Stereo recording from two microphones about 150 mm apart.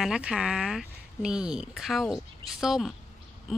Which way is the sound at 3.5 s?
Centre (ahead or behind).